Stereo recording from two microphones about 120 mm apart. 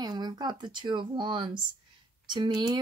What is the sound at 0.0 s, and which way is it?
Speech, 35° right (ahead or behind).